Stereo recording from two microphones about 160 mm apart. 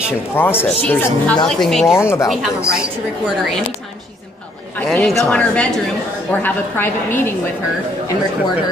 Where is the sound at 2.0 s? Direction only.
15° left (ahead or behind).